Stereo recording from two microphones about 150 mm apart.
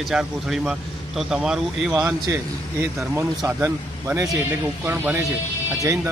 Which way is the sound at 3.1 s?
15° right (ahead or behind).